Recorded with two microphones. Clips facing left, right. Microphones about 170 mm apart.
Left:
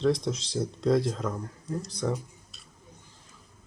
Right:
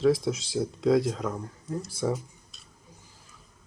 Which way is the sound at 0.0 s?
5° right (ahead or behind).